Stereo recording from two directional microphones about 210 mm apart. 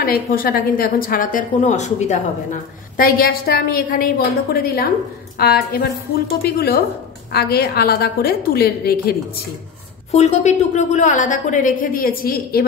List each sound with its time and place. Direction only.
0.0 s a woman's voice: 45° left (ahead or behind)
5.4 s a woman's voice: 45° left (ahead or behind)
10.1 s a woman's voice: 35° left (ahead or behind)